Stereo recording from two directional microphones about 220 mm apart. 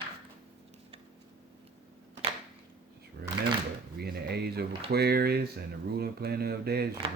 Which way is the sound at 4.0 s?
45° right (ahead or behind).